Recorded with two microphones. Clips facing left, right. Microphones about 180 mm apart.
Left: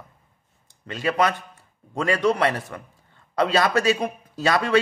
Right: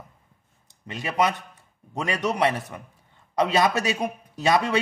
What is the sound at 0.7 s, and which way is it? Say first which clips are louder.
A man's voice: left 6 dB; 20° right (ahead or behind).